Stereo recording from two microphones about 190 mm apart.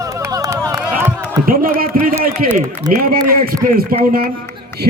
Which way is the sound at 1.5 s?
50° right (ahead or behind).